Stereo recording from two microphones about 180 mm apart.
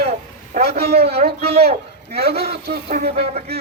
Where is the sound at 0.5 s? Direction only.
60° right (ahead or behind).